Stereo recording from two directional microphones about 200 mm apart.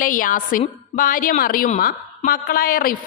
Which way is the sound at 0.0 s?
45° left (ahead or behind).